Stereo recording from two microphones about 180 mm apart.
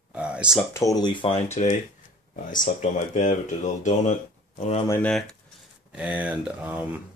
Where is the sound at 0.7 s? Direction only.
15° left (ahead or behind); by 4.2 s 40° left (ahead or behind).